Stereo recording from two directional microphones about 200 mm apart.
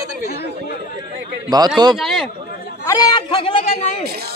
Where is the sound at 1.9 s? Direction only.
Centre (ahead or behind).